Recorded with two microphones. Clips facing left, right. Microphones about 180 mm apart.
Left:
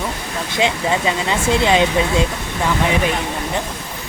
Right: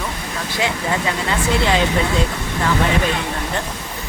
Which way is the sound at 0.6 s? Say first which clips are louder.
Left 3 dB; 20° left (ahead or behind).